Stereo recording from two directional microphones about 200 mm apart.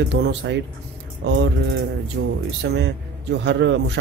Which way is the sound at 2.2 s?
55° right (ahead or behind).